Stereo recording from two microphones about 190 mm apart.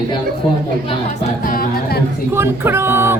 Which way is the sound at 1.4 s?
50° left (ahead or behind).